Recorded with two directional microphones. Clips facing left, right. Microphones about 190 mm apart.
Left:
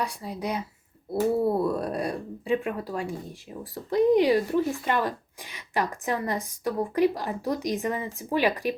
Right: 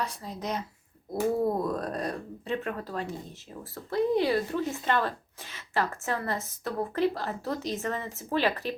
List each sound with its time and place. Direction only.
0.0 s a woman's voice: 10° left (ahead or behind)